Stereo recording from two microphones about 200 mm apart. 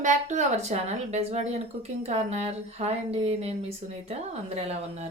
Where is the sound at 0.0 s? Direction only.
40° right (ahead or behind).